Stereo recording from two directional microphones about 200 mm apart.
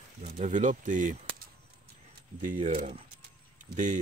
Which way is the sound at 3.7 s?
40° right (ahead or behind).